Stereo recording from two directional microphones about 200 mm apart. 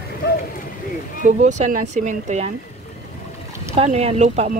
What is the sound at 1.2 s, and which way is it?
Speech, 40° right (ahead or behind).